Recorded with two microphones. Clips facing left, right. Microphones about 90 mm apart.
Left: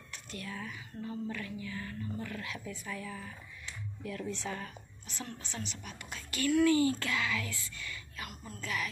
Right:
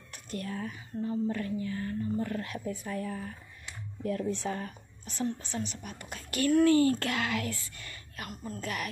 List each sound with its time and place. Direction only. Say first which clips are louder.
0.1 s speech: right 6 dB; 45° right (ahead or behind)
1.0 s a woman's voice: right 7 dB; 30° right (ahead or behind); by 8.8 s 50° right (ahead or behind)